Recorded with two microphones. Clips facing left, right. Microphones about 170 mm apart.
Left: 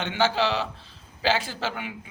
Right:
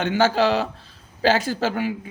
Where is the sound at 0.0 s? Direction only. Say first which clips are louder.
Right 5 dB; 45° right (ahead or behind).